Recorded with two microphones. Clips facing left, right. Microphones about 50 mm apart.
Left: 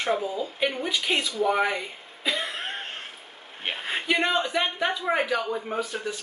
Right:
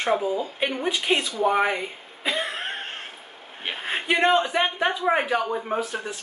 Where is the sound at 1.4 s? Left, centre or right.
Centre.